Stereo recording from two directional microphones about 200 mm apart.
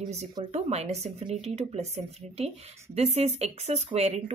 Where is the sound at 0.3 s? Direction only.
25° right (ahead or behind).